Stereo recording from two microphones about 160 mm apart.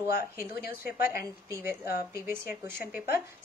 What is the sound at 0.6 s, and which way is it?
Speech, 70° left (ahead or behind).